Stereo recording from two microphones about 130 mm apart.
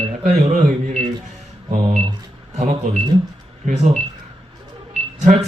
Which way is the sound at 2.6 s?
70° right (ahead or behind).